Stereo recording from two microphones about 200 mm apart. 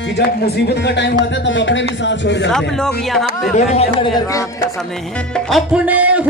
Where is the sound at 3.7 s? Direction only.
30° left (ahead or behind).